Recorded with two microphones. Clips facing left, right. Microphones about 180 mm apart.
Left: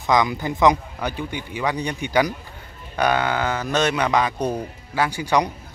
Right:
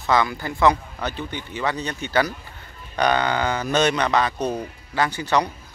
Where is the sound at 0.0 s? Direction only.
15° left (ahead or behind).